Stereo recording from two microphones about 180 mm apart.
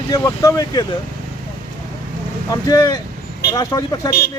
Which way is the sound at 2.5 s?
20° left (ahead or behind).